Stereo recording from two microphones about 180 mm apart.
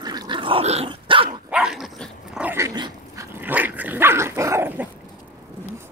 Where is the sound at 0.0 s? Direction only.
20° right (ahead or behind).